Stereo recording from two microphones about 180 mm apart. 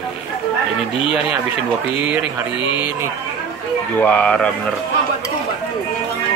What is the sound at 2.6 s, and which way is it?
Speech, 25° left (ahead or behind).